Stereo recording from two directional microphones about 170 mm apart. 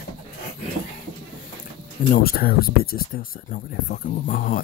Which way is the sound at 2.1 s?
60° left (ahead or behind).